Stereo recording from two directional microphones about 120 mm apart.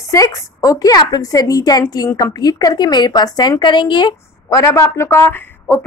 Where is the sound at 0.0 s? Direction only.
30° left (ahead or behind).